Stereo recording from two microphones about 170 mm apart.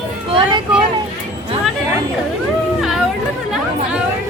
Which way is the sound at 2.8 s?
Centre (ahead or behind).